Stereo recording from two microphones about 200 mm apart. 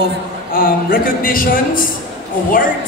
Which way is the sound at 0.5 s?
45° left (ahead or behind).